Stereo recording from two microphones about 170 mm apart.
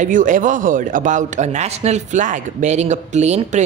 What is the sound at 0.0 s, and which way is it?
A man's voice, 50° right (ahead or behind).